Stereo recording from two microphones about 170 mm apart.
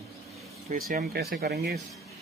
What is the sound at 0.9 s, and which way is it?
Speech, 65° right (ahead or behind).